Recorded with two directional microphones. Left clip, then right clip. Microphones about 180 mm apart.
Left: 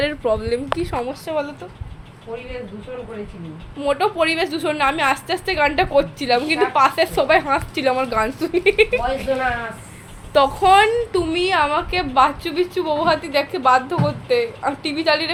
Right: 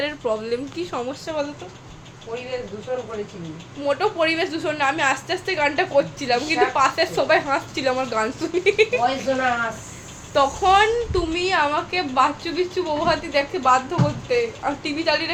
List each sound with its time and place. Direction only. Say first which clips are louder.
0.0 s a woman's voice: left 4 dB; 20° left (ahead or behind)
3.8 s a woman's voice: left 2 dB; 25° left (ahead or behind)
10.3 s a woman's voice: left 3 dB; 25° left (ahead or behind)